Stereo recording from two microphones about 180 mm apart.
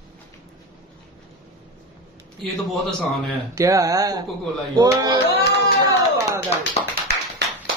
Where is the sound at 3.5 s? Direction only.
20° right (ahead or behind).